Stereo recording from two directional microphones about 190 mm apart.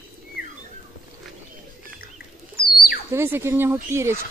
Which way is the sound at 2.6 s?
50° left (ahead or behind).